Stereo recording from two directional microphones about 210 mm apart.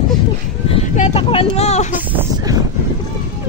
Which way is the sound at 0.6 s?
30° left (ahead or behind).